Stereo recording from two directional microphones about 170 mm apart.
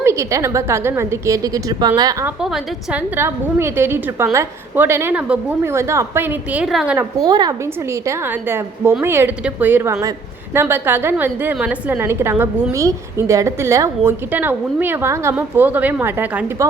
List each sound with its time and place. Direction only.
0.0 s a woman's voice: 15° right (ahead or behind)
2.2 s a woman's voice: 5° right (ahead or behind)
7.2 s a woman's voice: 25° right (ahead or behind)